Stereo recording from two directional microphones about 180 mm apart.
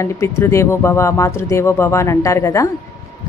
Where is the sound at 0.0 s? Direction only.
15° left (ahead or behind).